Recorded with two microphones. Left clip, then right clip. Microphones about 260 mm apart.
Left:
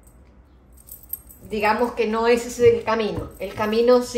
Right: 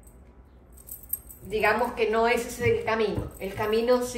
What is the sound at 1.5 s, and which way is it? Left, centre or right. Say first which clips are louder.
A woman's voice: left 3 dB; left.